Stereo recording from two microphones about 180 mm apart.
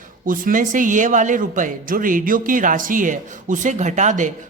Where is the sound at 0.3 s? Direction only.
50° right (ahead or behind).